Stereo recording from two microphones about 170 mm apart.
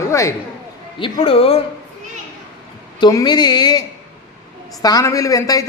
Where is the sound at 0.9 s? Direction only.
30° left (ahead or behind).